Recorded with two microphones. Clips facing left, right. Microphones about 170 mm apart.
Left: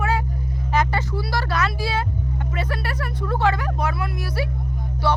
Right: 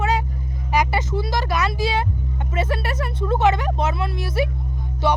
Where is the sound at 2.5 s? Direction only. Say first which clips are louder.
Right 6 dB; 20° right (ahead or behind).